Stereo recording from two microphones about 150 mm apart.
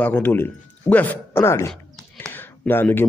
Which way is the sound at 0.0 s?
15° left (ahead or behind).